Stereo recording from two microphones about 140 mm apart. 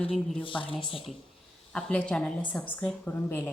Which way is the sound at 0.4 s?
40° left (ahead or behind).